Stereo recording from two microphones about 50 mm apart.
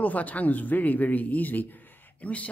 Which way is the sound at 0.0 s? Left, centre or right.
Left.